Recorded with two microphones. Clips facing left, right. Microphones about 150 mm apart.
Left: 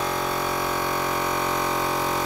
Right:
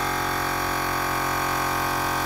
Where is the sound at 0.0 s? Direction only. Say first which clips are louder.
Left 1 dB; 15° left (ahead or behind).